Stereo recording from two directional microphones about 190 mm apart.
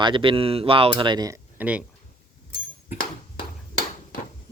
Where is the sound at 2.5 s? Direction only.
45° left (ahead or behind).